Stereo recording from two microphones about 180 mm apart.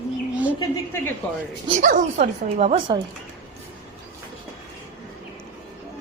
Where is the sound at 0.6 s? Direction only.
15° left (ahead or behind).